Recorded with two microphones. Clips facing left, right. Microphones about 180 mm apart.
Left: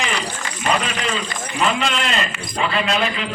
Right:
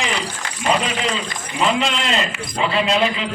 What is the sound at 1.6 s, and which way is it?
A man's voice, 25° right (ahead or behind).